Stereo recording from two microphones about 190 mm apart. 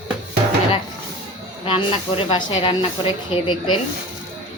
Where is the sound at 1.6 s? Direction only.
30° left (ahead or behind).